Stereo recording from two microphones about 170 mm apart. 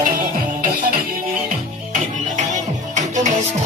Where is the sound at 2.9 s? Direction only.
45° right (ahead or behind).